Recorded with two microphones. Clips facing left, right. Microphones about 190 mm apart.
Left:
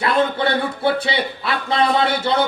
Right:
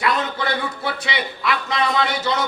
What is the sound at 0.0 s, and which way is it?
A man's voice, 30° left (ahead or behind).